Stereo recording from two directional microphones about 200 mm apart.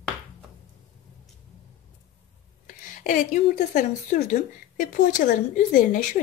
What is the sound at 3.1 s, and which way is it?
A woman's voice, 45° left (ahead or behind).